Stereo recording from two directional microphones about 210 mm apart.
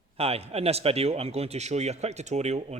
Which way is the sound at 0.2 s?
30° right (ahead or behind).